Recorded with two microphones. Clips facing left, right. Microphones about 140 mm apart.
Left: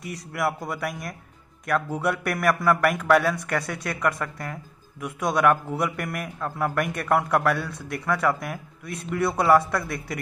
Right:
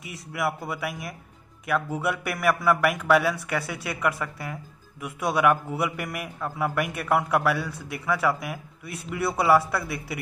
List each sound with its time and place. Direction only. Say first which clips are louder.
0.0 s speech: left 2 dB; centre (ahead or behind)